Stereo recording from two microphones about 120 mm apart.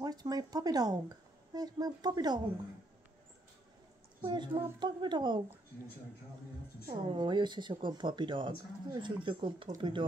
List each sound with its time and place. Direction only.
0.0 s speech: 35° right (ahead or behind)
4.2 s a woman's voice: 40° right (ahead or behind)
6.9 s speech: 45° right (ahead or behind)